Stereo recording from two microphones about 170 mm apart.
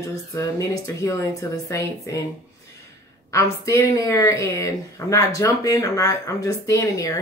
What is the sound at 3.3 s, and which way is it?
A woman's voice, 20° left (ahead or behind).